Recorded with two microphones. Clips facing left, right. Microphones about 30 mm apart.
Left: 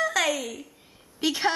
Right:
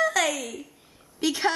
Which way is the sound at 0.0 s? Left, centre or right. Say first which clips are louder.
Right 1 dB; centre.